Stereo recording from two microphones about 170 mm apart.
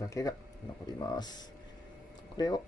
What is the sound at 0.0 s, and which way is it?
Speech, 20° left (ahead or behind).